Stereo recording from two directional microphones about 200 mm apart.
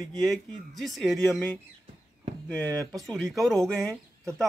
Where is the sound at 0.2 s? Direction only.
Centre (ahead or behind).